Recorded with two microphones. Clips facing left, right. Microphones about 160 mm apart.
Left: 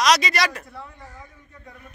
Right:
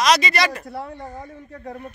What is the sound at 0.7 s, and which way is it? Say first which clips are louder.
Speech: right 9 dB; 80° right.